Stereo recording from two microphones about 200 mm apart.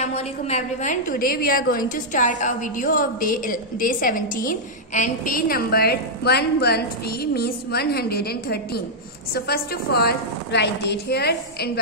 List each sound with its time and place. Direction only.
0.0 s a woman's voice: 35° left (ahead or behind); by 11.8 s 55° left (ahead or behind)